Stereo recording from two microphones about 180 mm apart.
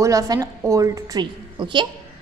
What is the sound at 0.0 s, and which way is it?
A woman's voice, 20° right (ahead or behind).